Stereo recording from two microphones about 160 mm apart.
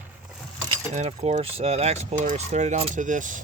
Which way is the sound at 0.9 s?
45° right (ahead or behind).